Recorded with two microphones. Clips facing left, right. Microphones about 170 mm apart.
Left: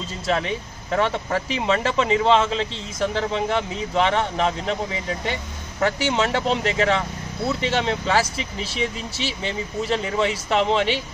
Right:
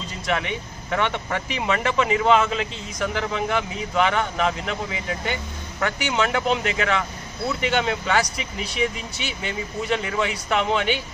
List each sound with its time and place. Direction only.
0.3 s speech: 30° left (ahead or behind)